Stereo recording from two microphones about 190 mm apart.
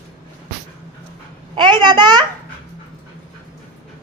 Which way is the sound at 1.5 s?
25° right (ahead or behind).